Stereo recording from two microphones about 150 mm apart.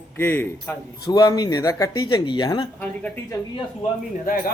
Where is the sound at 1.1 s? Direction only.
25° left (ahead or behind).